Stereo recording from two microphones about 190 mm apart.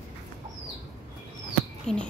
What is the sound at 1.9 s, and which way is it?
Speech, 5° left (ahead or behind).